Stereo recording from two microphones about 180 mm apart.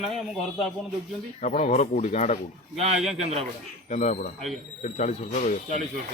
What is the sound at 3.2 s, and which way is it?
Speech, 35° right (ahead or behind).